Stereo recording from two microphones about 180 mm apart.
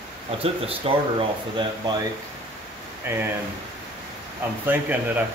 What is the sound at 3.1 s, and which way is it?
Speech, 15° right (ahead or behind).